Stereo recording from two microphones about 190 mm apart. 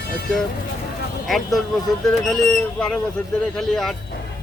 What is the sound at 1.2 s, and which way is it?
Speech, centre (ahead or behind).